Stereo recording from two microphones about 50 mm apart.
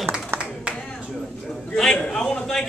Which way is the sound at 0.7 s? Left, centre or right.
Centre.